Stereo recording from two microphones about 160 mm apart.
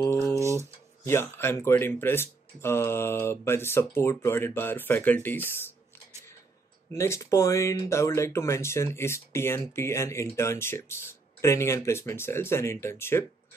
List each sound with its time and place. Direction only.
0.4 s a sound: 15° right (ahead or behind)
1.0 s speech: 15° left (ahead or behind)
6.9 s speech: 20° left (ahead or behind)